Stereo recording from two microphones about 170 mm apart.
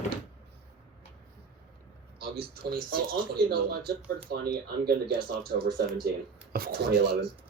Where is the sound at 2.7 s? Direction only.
65° right (ahead or behind).